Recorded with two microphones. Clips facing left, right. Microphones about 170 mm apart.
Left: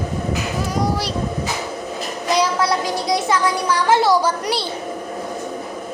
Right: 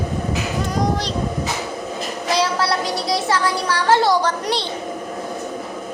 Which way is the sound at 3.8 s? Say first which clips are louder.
Even; 10° left (ahead or behind).